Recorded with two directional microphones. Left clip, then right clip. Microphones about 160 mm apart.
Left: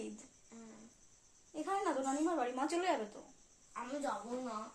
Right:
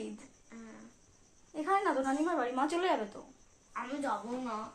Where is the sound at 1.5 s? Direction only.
5° right (ahead or behind).